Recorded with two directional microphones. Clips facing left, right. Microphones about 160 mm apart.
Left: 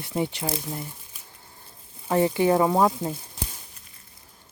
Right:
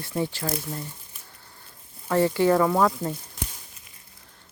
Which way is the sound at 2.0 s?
20° left (ahead or behind).